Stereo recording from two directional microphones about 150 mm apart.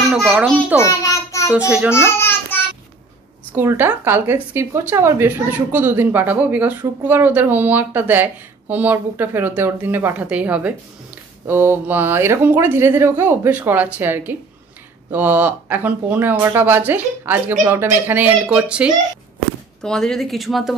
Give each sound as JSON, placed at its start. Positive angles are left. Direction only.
{"t": 0.1, "sound": "a child's voice", "side_deg": -5}
{"t": 0.7, "sound": "a sound", "side_deg": 20}
{"t": 1.5, "sound": "a woman's voice", "side_deg": -10}
{"t": 2.0, "sound": "a child's voice", "side_deg": 15}
{"t": 3.5, "sound": "a woman's voice", "side_deg": -15}
{"t": 19.8, "sound": "speech", "side_deg": 5}